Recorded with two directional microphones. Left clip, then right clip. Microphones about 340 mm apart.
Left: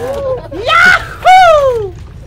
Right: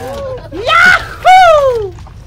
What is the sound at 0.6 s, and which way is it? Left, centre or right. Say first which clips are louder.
Screaming: even; centre.